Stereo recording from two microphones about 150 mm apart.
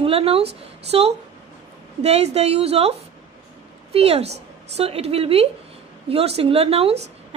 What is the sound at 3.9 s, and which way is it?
A woman's voice, 45° right (ahead or behind).